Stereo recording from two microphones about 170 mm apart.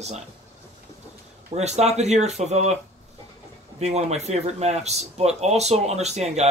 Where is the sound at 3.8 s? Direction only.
40° right (ahead or behind).